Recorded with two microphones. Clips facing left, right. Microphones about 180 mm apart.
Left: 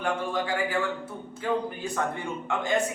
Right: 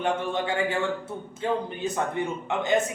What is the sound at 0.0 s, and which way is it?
A man's voice, 25° right (ahead or behind).